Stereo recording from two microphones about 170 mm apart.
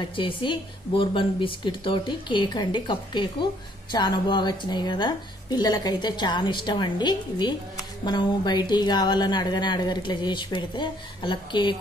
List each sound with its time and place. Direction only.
0.1 s a woman's voice: 30° left (ahead or behind)